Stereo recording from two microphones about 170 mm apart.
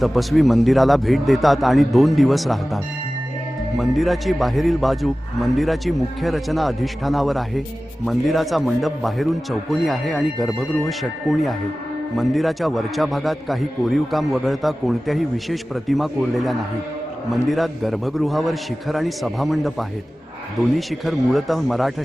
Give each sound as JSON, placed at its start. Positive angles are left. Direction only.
{"t": 0.0, "sound": "a man's voice", "side_deg": 0}
{"t": 20.7, "sound": "a man's voice", "side_deg": 0}